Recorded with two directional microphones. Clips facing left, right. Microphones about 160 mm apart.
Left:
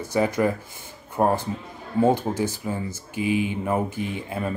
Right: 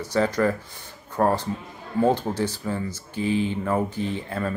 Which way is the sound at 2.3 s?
50° left (ahead or behind).